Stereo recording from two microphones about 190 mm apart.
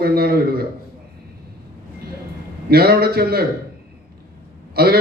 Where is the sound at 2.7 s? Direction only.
55° right (ahead or behind).